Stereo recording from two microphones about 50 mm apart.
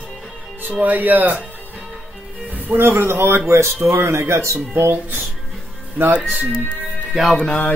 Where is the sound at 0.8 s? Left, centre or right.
Right.